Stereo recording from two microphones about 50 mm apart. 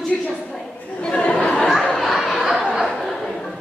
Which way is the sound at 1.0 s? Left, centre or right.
Left.